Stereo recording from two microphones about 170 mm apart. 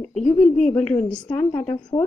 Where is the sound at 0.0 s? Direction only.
5° left (ahead or behind).